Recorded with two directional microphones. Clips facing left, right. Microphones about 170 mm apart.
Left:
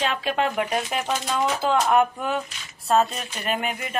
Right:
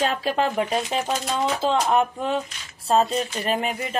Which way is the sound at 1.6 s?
25° right (ahead or behind).